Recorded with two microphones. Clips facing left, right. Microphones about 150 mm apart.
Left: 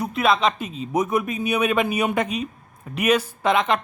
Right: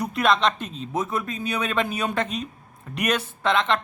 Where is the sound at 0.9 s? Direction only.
15° left (ahead or behind).